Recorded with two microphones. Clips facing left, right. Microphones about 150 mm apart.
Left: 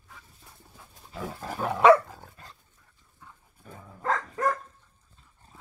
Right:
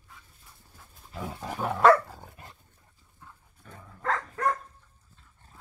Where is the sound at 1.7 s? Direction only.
5° left (ahead or behind).